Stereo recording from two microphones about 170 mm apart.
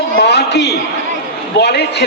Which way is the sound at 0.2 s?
80° left.